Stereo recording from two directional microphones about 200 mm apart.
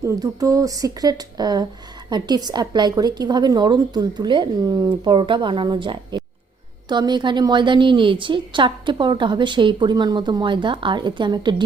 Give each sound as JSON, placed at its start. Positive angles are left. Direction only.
{"t": 0.0, "sound": "a woman's voice", "side_deg": -15}